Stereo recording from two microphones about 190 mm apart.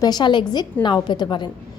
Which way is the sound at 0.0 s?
20° left (ahead or behind).